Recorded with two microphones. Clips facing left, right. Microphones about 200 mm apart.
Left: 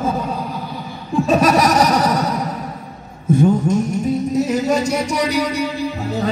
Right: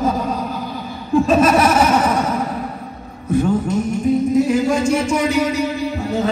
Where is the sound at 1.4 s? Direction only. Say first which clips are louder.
Right 1 dB; 40° left (ahead or behind).